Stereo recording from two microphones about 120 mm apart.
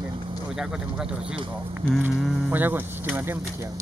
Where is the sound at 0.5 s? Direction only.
5° right (ahead or behind).